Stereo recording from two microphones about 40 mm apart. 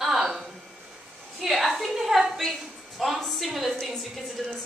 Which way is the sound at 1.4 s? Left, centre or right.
Centre.